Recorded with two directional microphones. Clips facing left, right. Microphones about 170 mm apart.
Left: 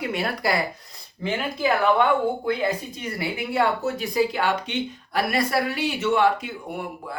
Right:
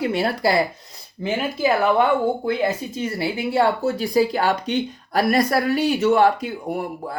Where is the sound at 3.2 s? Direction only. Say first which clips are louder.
Right 3 dB; 30° right (ahead or behind).